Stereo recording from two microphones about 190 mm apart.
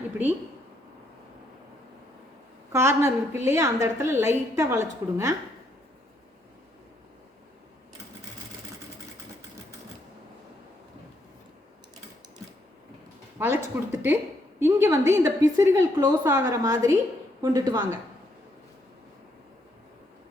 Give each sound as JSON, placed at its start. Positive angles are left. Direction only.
{"t": 2.7, "sound": "a woman's voice", "side_deg": -15}
{"t": 13.4, "sound": "a woman's voice", "side_deg": -10}